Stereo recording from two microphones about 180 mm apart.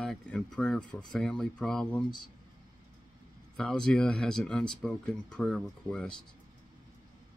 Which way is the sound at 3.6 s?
5° left (ahead or behind).